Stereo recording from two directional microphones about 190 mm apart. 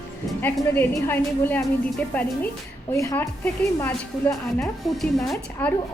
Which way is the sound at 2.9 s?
15° left (ahead or behind).